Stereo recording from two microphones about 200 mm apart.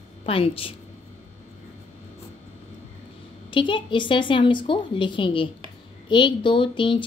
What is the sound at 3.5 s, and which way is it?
A woman's voice, 25° left (ahead or behind).